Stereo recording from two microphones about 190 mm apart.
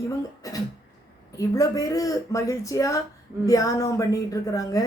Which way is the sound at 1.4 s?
20° left (ahead or behind).